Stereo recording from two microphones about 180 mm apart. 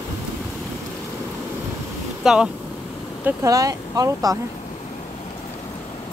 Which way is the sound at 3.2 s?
20° right (ahead or behind).